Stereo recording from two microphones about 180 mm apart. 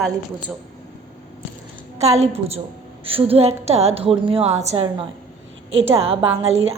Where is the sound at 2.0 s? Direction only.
35° right (ahead or behind).